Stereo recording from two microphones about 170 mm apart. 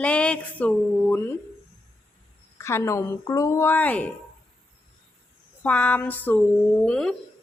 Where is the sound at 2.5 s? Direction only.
15° left (ahead or behind).